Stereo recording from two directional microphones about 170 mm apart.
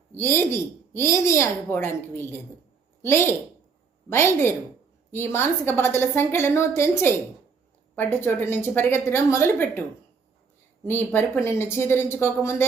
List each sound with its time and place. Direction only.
0.1 s a woman's voice: 15° left (ahead or behind)
10.8 s a woman's voice: 10° left (ahead or behind)